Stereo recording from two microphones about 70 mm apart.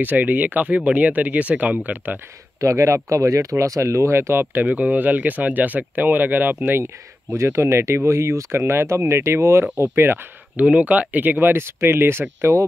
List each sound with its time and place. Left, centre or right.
0.0 s speech: right
2.6 s speech: right
4.6 s speech: centre; by 12.6 s right